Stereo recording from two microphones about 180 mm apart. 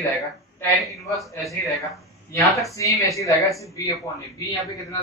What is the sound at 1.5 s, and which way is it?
Speech, centre (ahead or behind).